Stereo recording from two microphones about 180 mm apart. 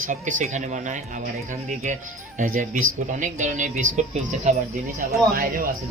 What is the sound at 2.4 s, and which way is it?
Speech, 50° right (ahead or behind).